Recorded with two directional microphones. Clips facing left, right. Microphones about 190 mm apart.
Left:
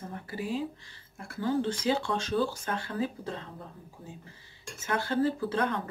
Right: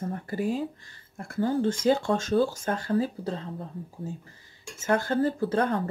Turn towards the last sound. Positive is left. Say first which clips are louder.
# right 3 dB
turn(degrees=-45)  # may be behind; listen again after turning